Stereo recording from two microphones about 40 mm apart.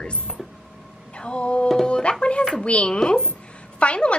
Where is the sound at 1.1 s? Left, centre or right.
Left.